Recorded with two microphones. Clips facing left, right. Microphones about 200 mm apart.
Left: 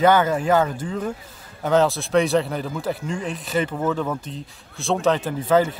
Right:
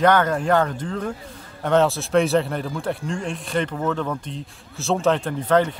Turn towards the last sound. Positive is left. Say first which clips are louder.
# even
turn(degrees=5)  # may be behind; listen again after turning